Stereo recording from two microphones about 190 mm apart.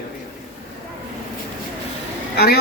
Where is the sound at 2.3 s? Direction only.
55° left (ahead or behind).